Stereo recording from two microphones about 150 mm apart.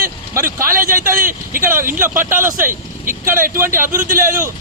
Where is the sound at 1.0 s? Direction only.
65° right (ahead or behind).